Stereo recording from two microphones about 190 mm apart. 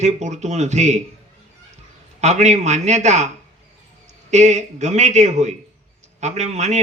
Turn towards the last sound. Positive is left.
turn(degrees=-35)  # may be behind; listen again after turning